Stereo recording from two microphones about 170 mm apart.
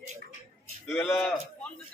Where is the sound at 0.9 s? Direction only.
10° left (ahead or behind).